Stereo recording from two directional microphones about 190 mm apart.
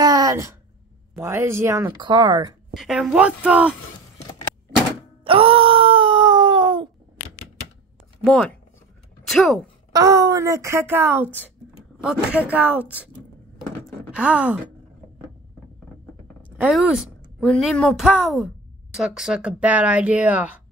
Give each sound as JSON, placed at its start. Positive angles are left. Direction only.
{"t": 0.0, "sound": "a sound", "side_deg": -20}
{"t": 1.1, "sound": "speech", "side_deg": -15}
{"t": 2.7, "sound": "a woman's voice", "side_deg": 0}
{"t": 5.2, "sound": "wail", "side_deg": -30}
{"t": 8.2, "sound": "a woman's voice", "side_deg": 5}
{"t": 9.9, "sound": "speech", "side_deg": -20}
{"t": 11.2, "sound": "speech", "side_deg": 10}
{"t": 12.0, "sound": "speech", "side_deg": -5}
{"t": 16.5, "sound": "a woman's voice", "side_deg": -5}